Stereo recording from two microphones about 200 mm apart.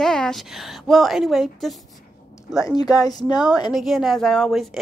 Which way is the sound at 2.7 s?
15° left (ahead or behind).